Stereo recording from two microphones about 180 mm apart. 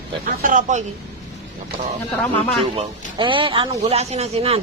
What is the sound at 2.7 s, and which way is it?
Speech, 25° right (ahead or behind).